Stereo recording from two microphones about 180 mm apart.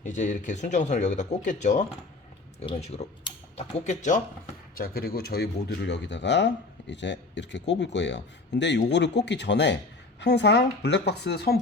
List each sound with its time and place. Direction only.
0.0 s speech: 45° left (ahead or behind)
4.7 s speech: 55° left (ahead or behind)